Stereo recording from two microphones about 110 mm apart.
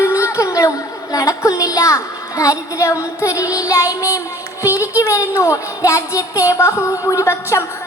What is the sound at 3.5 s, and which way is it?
Child singing, 30° left (ahead or behind).